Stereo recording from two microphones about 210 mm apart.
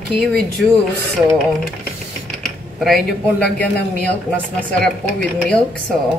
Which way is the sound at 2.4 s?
Centre (ahead or behind).